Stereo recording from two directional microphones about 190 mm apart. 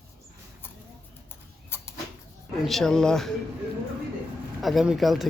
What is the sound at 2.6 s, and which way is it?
Speech, centre (ahead or behind).